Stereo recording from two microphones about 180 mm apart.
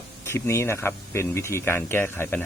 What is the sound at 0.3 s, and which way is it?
Speech, 15° left (ahead or behind).